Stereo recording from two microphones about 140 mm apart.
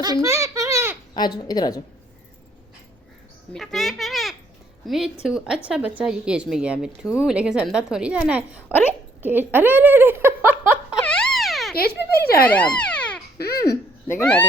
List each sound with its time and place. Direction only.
0.0 s a sound: 25° right (ahead or behind)
1.1 s speech: 30° left (ahead or behind)
3.5 s a child's voice: centre (ahead or behind)
8.7 s speech: 15° left (ahead or behind)
9.2 s speech: 15° right (ahead or behind)
11.0 s a sound: 5° left (ahead or behind)
11.8 s a child's voice: 90° left
12.7 s a sound: 10° left (ahead or behind)
14.1 s speech: 15° left (ahead or behind)